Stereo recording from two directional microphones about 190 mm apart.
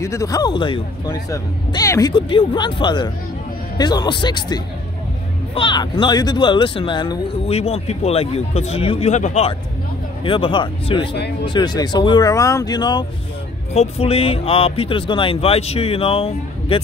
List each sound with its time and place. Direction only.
0.0 s speech: 15° left (ahead or behind)
13.7 s speech: 30° left (ahead or behind)